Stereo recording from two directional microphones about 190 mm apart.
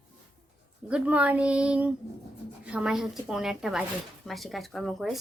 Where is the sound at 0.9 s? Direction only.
5° right (ahead or behind).